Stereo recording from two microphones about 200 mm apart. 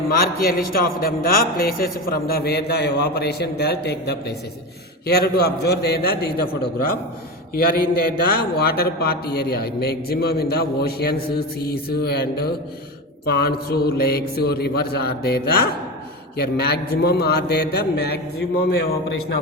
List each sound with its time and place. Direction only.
0.2 s a man's voice: 50° left (ahead or behind)